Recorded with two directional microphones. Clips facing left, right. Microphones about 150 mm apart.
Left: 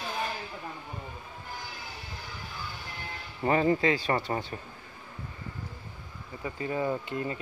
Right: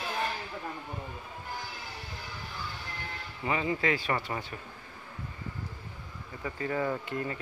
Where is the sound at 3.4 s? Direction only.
45° left (ahead or behind).